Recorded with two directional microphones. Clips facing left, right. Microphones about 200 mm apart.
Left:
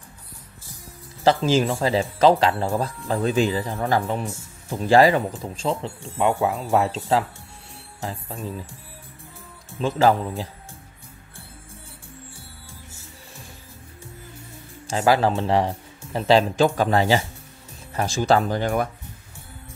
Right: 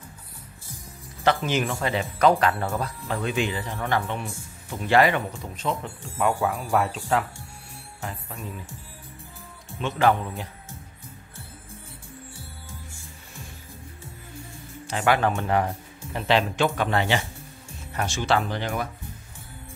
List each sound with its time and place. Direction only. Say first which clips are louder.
1.2 s speech: left 5 dB; 30° left (ahead or behind)
9.8 s speech: left 3 dB; 35° left (ahead or behind)
14.9 s speech: left 3 dB; 35° left (ahead or behind)